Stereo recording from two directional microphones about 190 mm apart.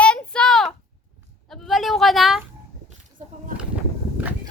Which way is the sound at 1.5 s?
Centre (ahead or behind).